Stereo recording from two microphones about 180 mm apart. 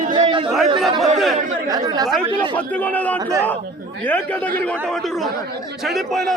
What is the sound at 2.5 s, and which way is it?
A man's voice, 10° left (ahead or behind).